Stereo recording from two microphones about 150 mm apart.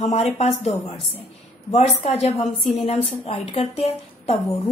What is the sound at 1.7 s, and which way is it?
A woman's voice, 45° left (ahead or behind).